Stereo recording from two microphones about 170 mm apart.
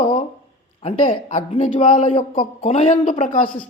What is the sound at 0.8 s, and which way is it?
Speech, 35° left (ahead or behind).